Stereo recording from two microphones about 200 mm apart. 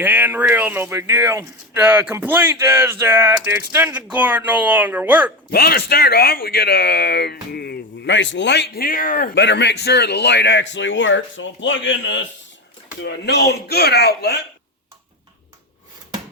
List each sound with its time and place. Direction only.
0.0 s speech: 10° right (ahead or behind)
5.5 s speech: 50° left (ahead or behind)